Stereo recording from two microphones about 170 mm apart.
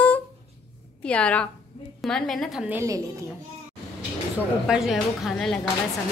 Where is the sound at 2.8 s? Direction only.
20° right (ahead or behind).